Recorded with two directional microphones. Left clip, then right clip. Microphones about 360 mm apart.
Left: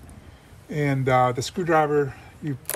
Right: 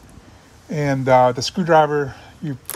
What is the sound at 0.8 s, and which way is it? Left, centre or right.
Speech, centre.